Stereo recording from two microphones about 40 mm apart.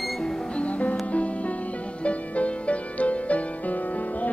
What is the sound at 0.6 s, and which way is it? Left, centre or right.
Music, left.